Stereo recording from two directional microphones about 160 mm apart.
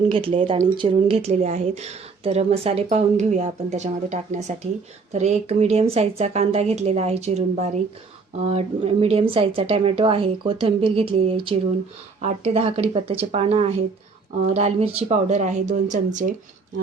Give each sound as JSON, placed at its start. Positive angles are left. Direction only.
{"t": 0.1, "sound": "a woman's voice", "side_deg": -35}